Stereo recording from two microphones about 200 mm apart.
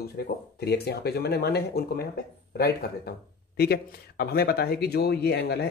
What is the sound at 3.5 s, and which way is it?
Speech, 50° left (ahead or behind).